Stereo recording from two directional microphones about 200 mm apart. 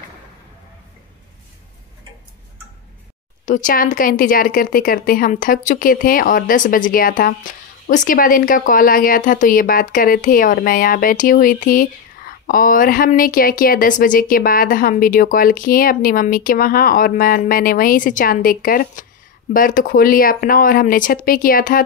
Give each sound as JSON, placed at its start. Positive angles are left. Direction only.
{"t": 3.4, "sound": "speech", "side_deg": 40}